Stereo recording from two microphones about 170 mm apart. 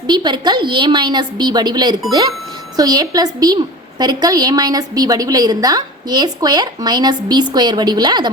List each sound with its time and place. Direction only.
0.1 s a woman's voice: 25° right (ahead or behind)